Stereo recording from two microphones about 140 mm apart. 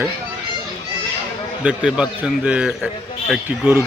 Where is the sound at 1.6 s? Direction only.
5° right (ahead or behind).